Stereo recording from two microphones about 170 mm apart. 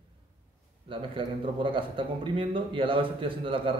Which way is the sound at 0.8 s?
30° right (ahead or behind).